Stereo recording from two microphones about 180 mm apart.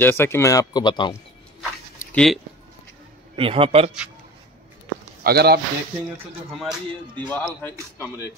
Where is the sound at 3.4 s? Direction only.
30° right (ahead or behind).